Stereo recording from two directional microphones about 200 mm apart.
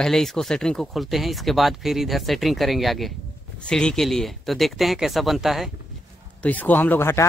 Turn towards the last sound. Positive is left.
turn(degrees=10)  # may be behind; listen again after turning